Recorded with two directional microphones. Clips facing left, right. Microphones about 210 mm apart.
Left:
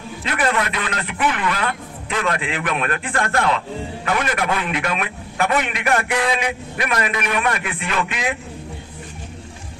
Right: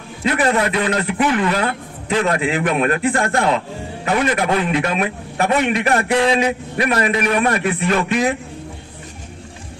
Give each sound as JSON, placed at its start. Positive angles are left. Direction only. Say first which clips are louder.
{"t": 0.3, "sound": "a man's voice", "louder": "right 4 dB", "side_deg": -30}